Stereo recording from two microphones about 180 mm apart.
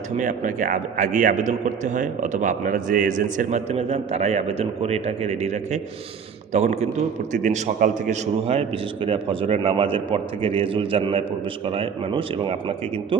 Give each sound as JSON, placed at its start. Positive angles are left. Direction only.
{"t": 0.2, "sound": "a man's voice", "side_deg": -45}